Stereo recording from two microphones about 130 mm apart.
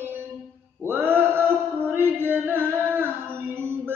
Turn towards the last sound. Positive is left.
turn(degrees=-15)  # may be behind; listen again after turning